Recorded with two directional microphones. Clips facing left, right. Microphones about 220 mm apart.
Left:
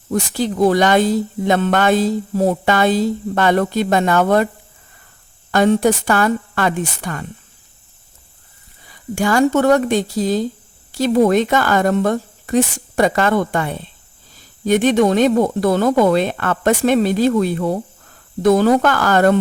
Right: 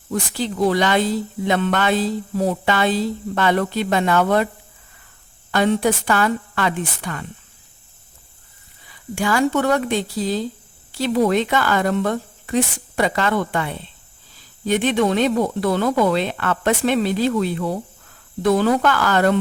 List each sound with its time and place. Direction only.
0.1 s speech: 45° left (ahead or behind)
5.5 s speech: 45° left (ahead or behind)
9.1 s speech: 45° left (ahead or behind)